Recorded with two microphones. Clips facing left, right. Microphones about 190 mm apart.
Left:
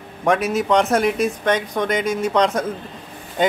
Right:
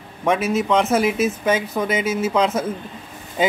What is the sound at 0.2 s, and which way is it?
A woman's voice, centre (ahead or behind).